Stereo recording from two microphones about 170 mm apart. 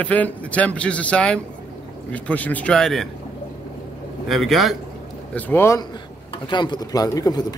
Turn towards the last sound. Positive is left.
turn(degrees=20)  # may be behind; listen again after turning